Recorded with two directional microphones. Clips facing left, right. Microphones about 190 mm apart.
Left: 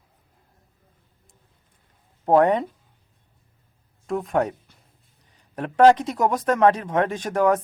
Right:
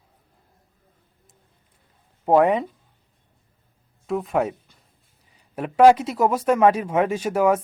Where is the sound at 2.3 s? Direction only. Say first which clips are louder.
Even; 5° right (ahead or behind).